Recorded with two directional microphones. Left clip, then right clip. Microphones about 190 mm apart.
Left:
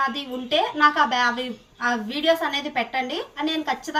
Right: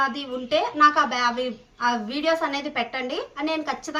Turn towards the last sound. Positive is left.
turn(degrees=-20)  # may be behind; listen again after turning